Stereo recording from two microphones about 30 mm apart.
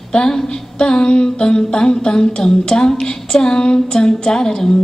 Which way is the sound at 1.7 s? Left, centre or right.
Left.